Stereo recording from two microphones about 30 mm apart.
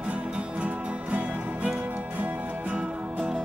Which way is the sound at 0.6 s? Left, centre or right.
Right.